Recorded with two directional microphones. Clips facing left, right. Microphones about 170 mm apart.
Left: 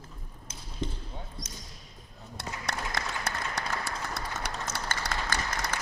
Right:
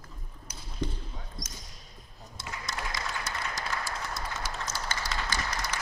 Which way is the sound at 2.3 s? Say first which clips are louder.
Left 3 dB; 65° left (ahead or behind).